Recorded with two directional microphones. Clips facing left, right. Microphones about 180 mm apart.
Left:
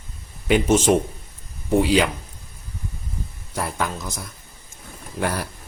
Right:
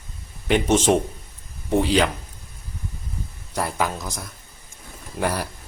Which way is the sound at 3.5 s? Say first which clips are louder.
Right 1 dB; centre (ahead or behind).